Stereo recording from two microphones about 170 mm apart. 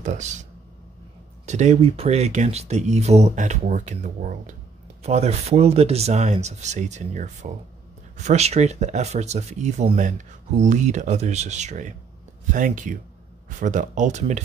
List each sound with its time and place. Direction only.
0.0 s speech: 45° right (ahead or behind)